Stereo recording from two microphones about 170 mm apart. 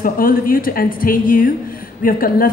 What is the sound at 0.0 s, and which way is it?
A woman's voice, 55° left (ahead or behind).